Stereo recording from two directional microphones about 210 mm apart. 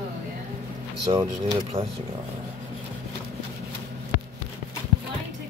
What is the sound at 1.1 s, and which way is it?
Speech, 25° right (ahead or behind).